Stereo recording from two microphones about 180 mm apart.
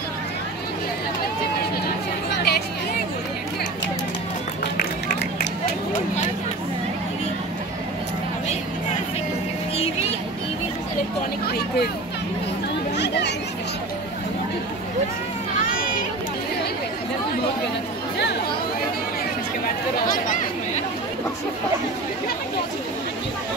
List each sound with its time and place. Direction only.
2.3 s chatter: 60° left (ahead or behind)
4.7 s run: 70° left (ahead or behind)
11.4 s vehicle: 60° left (ahead or behind)
12.9 s chatter: 70° left (ahead or behind)
20.1 s chatter: 45° left (ahead or behind)